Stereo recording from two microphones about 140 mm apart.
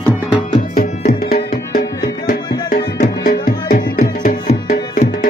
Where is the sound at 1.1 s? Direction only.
90° left.